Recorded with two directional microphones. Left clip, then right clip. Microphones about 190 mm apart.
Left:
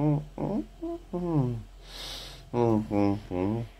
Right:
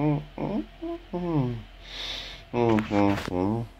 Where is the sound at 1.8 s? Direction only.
15° left (ahead or behind).